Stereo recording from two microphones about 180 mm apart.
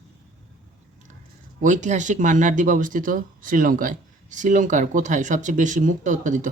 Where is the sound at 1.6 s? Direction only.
45° right (ahead or behind).